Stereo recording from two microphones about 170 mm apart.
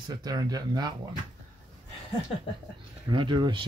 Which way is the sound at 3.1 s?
25° right (ahead or behind).